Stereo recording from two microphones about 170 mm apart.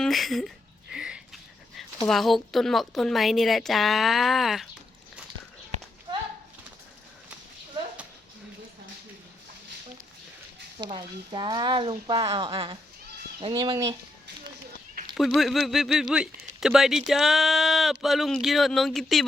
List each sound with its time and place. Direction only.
0.0 s a sound: centre (ahead or behind)
2.0 s a woman's voice: centre (ahead or behind)
10.8 s speech: 30° right (ahead or behind)
15.1 s a woman's voice: centre (ahead or behind)